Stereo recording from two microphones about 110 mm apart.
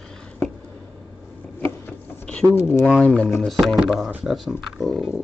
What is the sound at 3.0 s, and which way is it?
Speech, 10° left (ahead or behind).